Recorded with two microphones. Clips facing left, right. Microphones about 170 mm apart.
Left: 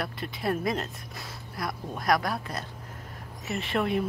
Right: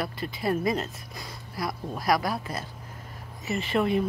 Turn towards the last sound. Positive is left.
turn(degrees=0)  # may be behind; listen again after turning